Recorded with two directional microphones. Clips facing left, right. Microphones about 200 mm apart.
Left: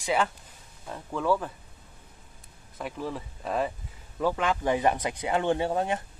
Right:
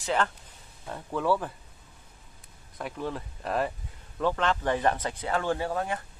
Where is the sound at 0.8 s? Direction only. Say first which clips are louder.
Even; centre (ahead or behind).